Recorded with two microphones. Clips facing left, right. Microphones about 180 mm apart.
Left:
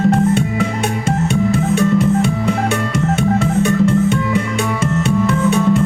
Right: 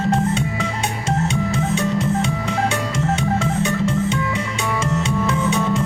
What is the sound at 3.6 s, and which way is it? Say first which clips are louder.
Music: left 6 dB; 55° left (ahead or behind).